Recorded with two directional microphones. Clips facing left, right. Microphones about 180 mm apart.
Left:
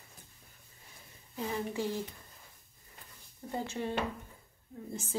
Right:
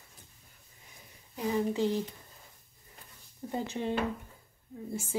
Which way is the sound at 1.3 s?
15° right (ahead or behind).